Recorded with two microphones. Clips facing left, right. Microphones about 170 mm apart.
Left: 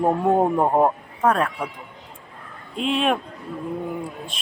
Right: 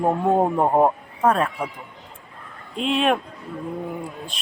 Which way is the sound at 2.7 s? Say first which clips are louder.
Right 1 dB; centre (ahead or behind).